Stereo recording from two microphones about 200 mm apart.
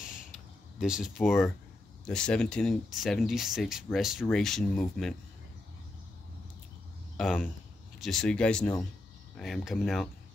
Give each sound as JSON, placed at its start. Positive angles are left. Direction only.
{"t": 0.7, "sound": "speech", "side_deg": -5}
{"t": 7.2, "sound": "speech", "side_deg": 0}